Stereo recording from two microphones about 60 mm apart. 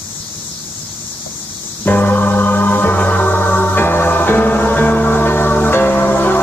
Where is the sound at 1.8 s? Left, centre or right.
Left.